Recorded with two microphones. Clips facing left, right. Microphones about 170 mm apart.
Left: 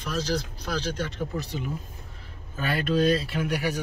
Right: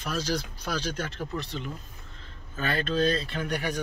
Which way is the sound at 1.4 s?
10° left (ahead or behind).